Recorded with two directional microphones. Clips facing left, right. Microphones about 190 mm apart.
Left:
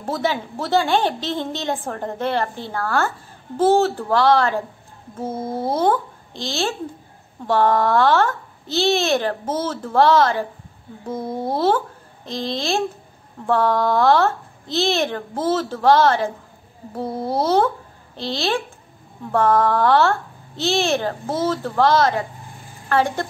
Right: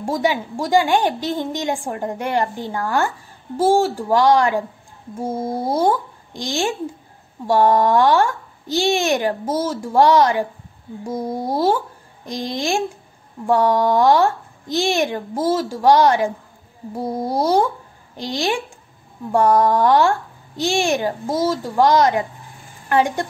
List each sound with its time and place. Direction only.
0.0 s a woman's voice: 15° right (ahead or behind)